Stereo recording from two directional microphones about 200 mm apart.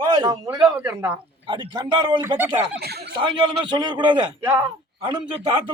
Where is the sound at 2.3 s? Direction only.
10° right (ahead or behind).